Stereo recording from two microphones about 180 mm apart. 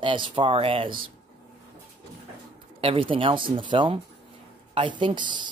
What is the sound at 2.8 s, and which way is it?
Speech, 30° right (ahead or behind).